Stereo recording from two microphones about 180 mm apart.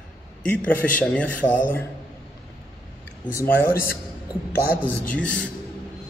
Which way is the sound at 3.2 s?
15° left (ahead or behind).